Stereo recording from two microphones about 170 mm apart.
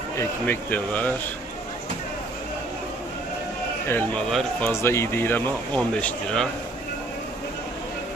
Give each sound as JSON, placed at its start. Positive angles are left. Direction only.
{"t": 0.2, "sound": "speech", "side_deg": 10}
{"t": 3.8, "sound": "speech", "side_deg": 10}
{"t": 4.7, "sound": "speech", "side_deg": 15}